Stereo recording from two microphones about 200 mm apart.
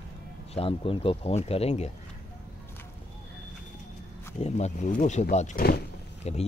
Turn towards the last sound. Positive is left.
turn(degrees=30)  # may be behind; listen again after turning